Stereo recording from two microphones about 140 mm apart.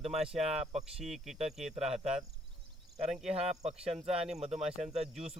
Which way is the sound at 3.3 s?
50° right (ahead or behind).